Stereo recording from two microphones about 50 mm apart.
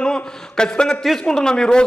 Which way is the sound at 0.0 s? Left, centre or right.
Centre.